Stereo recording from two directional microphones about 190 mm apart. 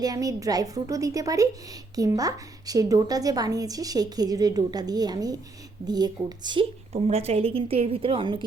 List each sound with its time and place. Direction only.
0.0 s a woman's voice: 20° right (ahead or behind)